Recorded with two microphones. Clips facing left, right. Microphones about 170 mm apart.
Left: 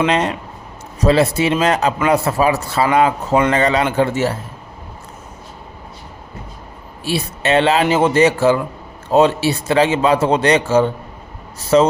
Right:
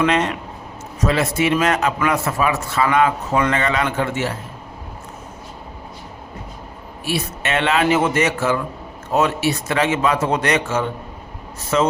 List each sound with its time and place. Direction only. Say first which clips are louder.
0.0 s a man's voice: left 1 dB; 30° left (ahead or behind)
7.0 s a man's voice: left 3 dB; 30° left (ahead or behind)